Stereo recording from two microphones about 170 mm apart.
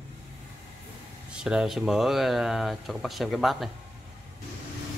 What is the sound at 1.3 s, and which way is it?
Speech, 5° right (ahead or behind).